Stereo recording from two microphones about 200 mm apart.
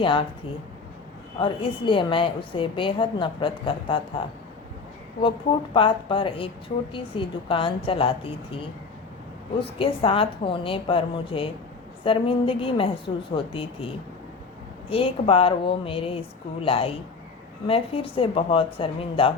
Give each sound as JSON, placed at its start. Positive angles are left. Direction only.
{"t": 0.0, "sound": "a woman's voice", "side_deg": 25}
{"t": 1.4, "sound": "a woman's voice", "side_deg": 25}
{"t": 9.6, "sound": "a woman's voice", "side_deg": 25}